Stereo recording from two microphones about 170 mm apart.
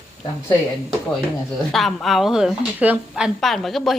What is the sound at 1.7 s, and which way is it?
A woman's voice, centre (ahead or behind).